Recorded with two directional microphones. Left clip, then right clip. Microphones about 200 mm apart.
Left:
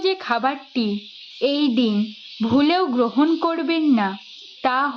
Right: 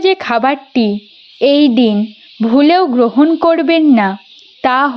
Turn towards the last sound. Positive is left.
turn(degrees=-35)  # may be behind; listen again after turning